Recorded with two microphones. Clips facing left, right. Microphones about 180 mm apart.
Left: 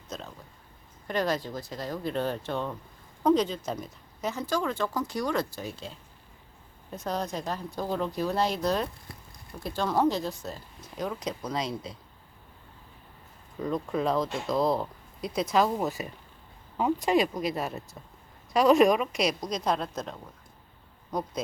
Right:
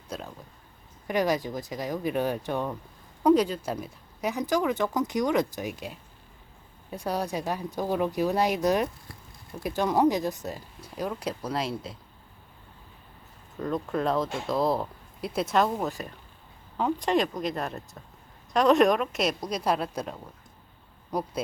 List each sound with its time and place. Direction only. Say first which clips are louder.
0.1 s a sound: right 2 dB; 10° right (ahead or behind)
1.0 s speech: right 3 dB; 15° right (ahead or behind)
13.6 s speech: even; centre (ahead or behind)